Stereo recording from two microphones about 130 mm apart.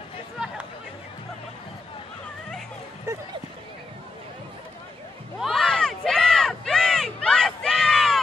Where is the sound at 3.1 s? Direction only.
20° right (ahead or behind).